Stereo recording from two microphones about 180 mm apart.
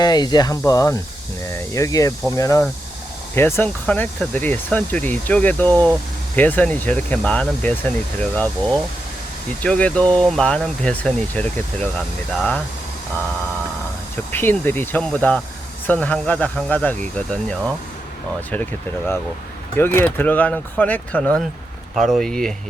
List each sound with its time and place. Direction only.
0.0 s speech: 25° left (ahead or behind); by 12.6 s 5° left (ahead or behind)
14.3 s speech: 10° left (ahead or behind)